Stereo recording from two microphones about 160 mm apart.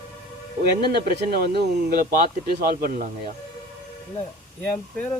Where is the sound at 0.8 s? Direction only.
75° right (ahead or behind).